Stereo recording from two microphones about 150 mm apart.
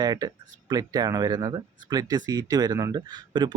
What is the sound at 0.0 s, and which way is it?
Speech, 25° right (ahead or behind).